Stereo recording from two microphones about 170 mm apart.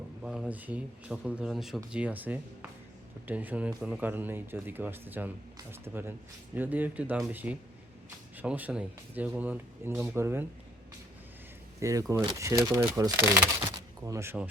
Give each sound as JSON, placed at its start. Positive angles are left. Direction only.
{"t": 0.2, "sound": "speech", "side_deg": -5}
{"t": 11.8, "sound": "speech", "side_deg": -20}